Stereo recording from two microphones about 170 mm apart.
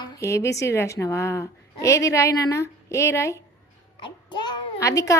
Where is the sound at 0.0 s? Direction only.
20° left (ahead or behind).